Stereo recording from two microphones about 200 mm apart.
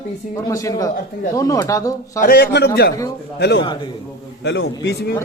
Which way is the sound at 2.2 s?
50° left (ahead or behind).